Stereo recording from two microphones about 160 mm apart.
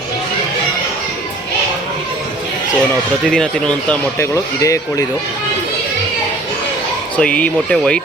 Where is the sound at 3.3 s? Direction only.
5° left (ahead or behind).